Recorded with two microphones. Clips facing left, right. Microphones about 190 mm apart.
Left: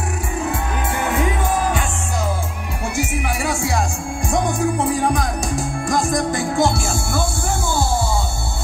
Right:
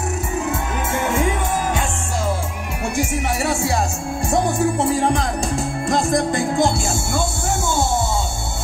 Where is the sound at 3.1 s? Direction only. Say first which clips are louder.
Right 1 dB; 25° right (ahead or behind).